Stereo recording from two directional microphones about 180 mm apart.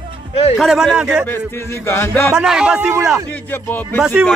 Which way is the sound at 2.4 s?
5° right (ahead or behind).